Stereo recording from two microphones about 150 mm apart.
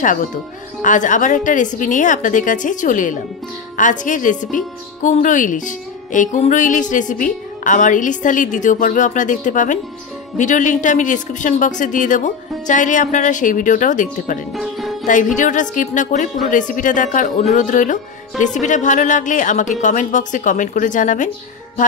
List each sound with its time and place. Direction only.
0.8 s speech: 60° left (ahead or behind)
14.5 s music: centre (ahead or behind)
15.0 s speech: 60° left (ahead or behind)